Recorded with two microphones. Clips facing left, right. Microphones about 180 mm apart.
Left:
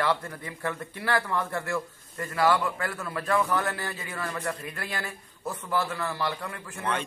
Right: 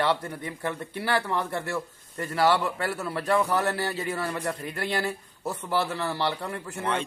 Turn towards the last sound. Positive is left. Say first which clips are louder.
# right 2 dB
turn(degrees=-25)  # may be behind; listen again after turning